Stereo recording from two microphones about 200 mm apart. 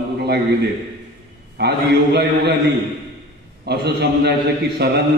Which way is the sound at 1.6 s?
55° right (ahead or behind).